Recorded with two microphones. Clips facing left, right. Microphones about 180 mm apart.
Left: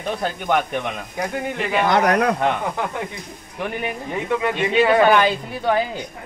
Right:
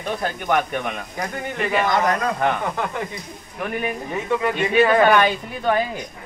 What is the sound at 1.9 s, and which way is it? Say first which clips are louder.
Speech: left 3 dB; 70° left (ahead or behind).